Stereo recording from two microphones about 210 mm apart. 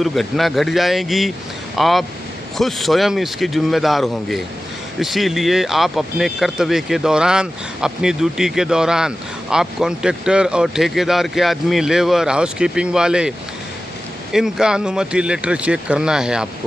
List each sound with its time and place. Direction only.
0.0 s speech: centre (ahead or behind)
14.3 s speech: 5° right (ahead or behind)